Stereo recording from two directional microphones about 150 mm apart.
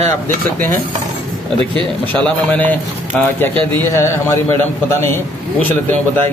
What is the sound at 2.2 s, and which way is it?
A man's voice, 10° left (ahead or behind).